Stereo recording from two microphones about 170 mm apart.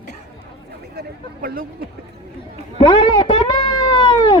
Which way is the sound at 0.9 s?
60° right (ahead or behind).